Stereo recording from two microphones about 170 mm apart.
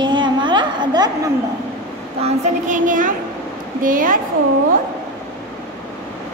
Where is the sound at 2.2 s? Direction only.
45° right (ahead or behind).